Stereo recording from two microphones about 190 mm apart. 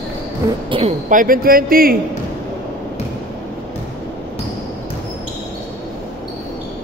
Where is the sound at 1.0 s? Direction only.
45° right (ahead or behind).